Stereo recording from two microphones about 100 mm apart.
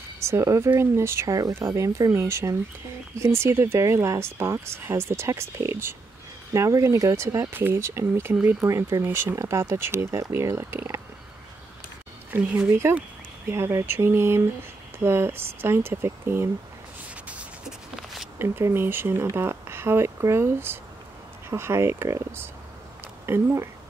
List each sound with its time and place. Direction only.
0.2 s speech: 30° right (ahead or behind)
8.4 s speech: 15° right (ahead or behind)
8.6 s speech: 30° right (ahead or behind)
12.3 s speech: 15° right (ahead or behind)
13.5 s speech: 30° right (ahead or behind)
17.1 s a sound: 10° right (ahead or behind)
18.4 s speech: 20° right (ahead or behind)